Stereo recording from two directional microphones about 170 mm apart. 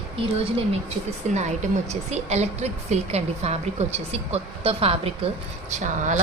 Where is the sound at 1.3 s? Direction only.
45° right (ahead or behind).